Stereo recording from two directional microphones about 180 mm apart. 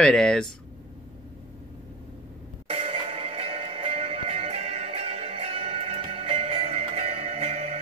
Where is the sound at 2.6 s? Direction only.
30° right (ahead or behind).